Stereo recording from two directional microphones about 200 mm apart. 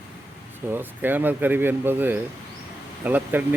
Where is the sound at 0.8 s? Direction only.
10° right (ahead or behind).